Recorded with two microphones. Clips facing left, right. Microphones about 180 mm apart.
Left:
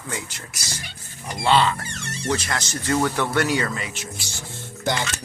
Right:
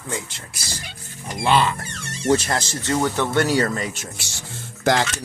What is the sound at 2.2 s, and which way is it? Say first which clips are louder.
Speech: right 6 dB; 30° right (ahead or behind).